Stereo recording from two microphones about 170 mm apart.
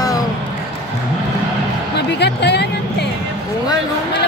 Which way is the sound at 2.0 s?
80° left.